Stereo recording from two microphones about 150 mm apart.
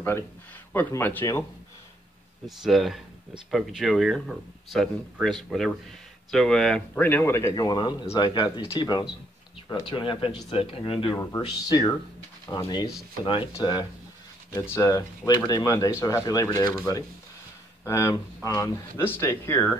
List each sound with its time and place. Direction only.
0.7 s speech: 10° left (ahead or behind)
2.4 s speech: centre (ahead or behind); by 12.9 s 25° left (ahead or behind)
13.2 s speech: 35° left (ahead or behind); by 19.8 s 15° left (ahead or behind)